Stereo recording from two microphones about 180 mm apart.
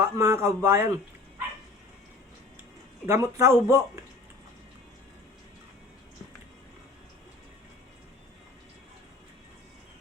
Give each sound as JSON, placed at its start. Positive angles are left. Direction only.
{"t": 0.0, "sound": "a man's voice", "side_deg": -15}
{"t": 3.1, "sound": "a man's voice", "side_deg": -15}